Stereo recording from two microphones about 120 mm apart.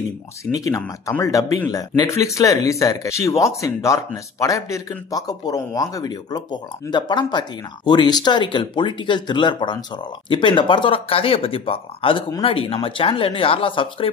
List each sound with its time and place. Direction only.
0.7 s speech: 25° left (ahead or behind); by 14.0 s 45° left (ahead or behind)